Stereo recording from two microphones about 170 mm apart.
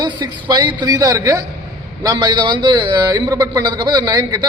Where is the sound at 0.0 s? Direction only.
25° right (ahead or behind).